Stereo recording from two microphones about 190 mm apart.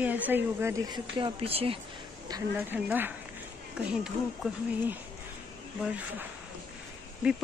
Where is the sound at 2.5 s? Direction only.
10° right (ahead or behind).